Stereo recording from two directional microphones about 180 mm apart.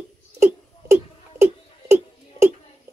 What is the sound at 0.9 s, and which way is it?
Giggle, 15° right (ahead or behind).